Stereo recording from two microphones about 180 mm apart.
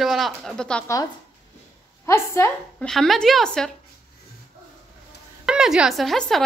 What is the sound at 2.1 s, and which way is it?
Speech, 15° left (ahead or behind).